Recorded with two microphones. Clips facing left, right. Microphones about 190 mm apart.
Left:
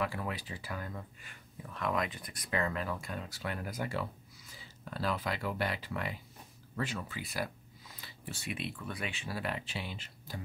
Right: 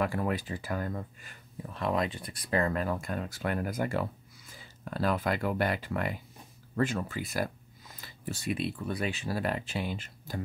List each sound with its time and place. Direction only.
0.0 s speech: 50° right (ahead or behind)
1.7 s speech: 30° right (ahead or behind); by 10.4 s 50° right (ahead or behind)